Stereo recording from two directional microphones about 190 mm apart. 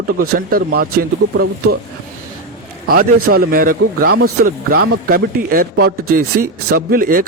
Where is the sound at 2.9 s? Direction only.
50° right (ahead or behind).